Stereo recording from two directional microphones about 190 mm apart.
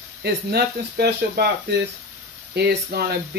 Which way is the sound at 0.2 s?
55° right (ahead or behind).